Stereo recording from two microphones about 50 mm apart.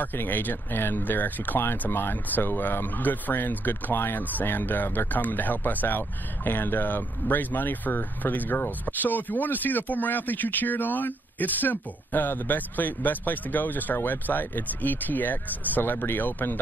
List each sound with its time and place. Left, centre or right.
0.0 s speech: left